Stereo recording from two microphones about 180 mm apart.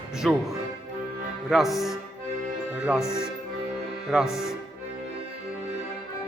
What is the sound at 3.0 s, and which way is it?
Speech, 15° left (ahead or behind).